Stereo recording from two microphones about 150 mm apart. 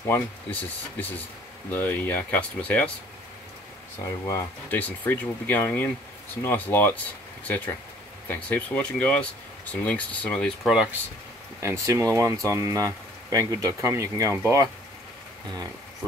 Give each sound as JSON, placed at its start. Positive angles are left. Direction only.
{"t": 0.1, "sound": "speech", "side_deg": 10}
{"t": 4.3, "sound": "speech", "side_deg": 10}
{"t": 10.7, "sound": "speech", "side_deg": -5}
{"t": 11.6, "sound": "speech", "side_deg": -20}